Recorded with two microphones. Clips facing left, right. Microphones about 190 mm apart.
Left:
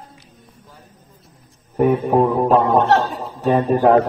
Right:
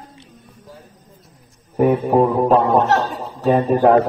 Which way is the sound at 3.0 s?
Centre (ahead or behind).